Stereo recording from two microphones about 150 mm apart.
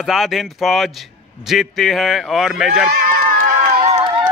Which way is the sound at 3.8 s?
40° right (ahead or behind).